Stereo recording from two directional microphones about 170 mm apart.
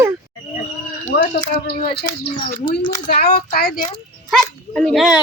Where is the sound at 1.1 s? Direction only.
60° left (ahead or behind).